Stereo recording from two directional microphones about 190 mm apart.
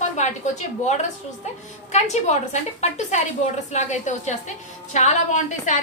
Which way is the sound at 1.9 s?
35° left (ahead or behind).